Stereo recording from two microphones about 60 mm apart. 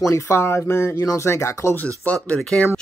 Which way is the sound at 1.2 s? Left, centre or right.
Left.